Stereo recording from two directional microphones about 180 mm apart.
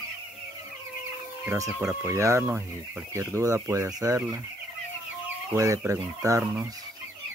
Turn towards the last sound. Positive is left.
turn(degrees=-15)  # may be behind; listen again after turning